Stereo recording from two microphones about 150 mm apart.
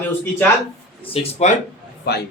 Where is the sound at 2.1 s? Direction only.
90° left.